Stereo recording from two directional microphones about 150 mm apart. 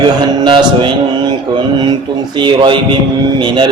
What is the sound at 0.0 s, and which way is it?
Speech, 30° right (ahead or behind).